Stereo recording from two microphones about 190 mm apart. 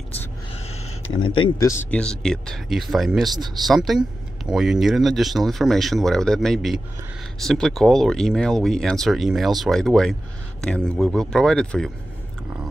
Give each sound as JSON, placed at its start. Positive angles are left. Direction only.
{"t": 1.1, "sound": "speech", "side_deg": 25}
{"t": 1.7, "sound": "speech", "side_deg": 10}